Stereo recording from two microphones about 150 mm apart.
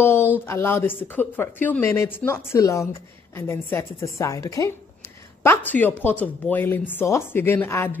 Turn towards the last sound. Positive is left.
turn(degrees=15)  # may be behind; listen again after turning